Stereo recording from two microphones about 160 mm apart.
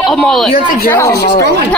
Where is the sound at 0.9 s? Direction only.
20° left (ahead or behind).